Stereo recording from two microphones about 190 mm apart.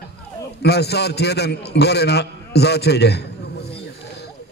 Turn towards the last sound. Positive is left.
turn(degrees=60)  # may be behind; listen again after turning